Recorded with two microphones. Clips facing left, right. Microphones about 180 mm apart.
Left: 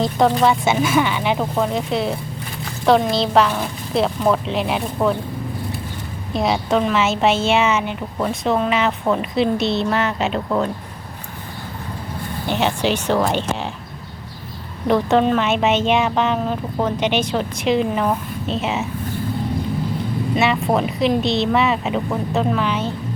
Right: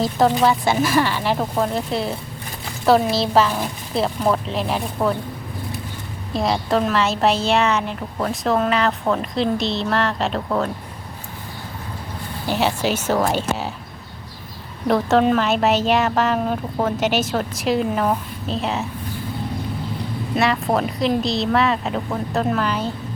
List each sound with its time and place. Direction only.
0.0 s a woman's voice: centre (ahead or behind)
6.3 s a woman's voice: centre (ahead or behind)
12.5 s a woman's voice: 5° right (ahead or behind)
14.8 s a woman's voice: centre (ahead or behind)
20.3 s a woman's voice: centre (ahead or behind)